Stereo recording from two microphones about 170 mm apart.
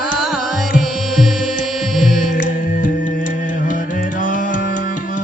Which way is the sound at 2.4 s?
50° left (ahead or behind).